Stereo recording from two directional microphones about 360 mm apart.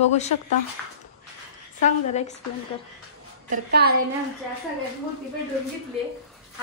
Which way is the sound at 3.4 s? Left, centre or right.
Right.